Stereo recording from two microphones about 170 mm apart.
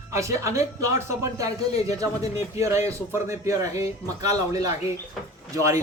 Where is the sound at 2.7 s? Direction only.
15° right (ahead or behind).